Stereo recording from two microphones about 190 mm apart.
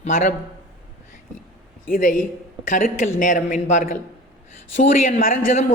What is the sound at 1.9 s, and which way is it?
A woman's voice, 45° left (ahead or behind).